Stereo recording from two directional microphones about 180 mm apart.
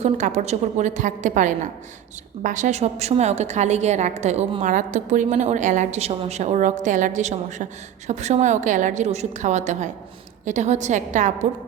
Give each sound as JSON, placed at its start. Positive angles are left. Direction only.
{"t": 0.0, "sound": "a woman's voice", "side_deg": -40}